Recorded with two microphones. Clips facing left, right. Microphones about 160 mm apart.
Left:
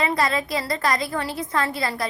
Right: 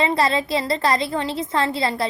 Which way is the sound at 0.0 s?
25° right (ahead or behind).